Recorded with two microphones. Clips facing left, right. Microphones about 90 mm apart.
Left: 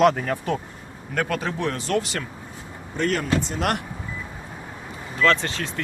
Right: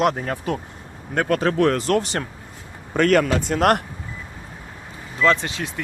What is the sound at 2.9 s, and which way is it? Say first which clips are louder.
Speech: right 6 dB; 70° right (ahead or behind).